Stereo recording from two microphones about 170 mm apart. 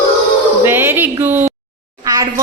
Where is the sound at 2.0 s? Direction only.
20° right (ahead or behind).